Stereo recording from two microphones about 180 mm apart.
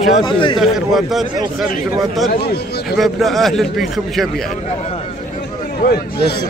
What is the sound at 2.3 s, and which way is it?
Speech, 60° left (ahead or behind).